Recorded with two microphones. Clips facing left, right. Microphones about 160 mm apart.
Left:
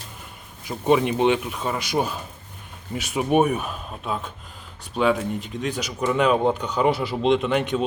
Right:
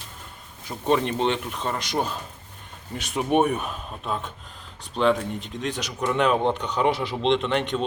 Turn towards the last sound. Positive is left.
turn(degrees=5)  # may be behind; listen again after turning